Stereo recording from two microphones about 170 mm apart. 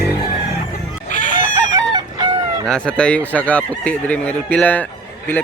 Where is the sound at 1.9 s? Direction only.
25° right (ahead or behind).